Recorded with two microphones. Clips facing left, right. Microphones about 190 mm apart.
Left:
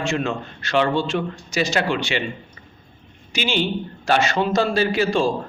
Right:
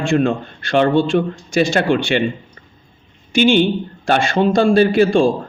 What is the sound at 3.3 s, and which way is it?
A man's voice, 55° right (ahead or behind).